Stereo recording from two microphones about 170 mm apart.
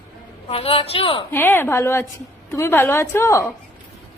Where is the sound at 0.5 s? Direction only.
35° left (ahead or behind).